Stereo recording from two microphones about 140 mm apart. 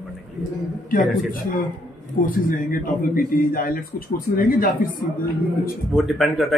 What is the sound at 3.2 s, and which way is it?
Speech, 85° left.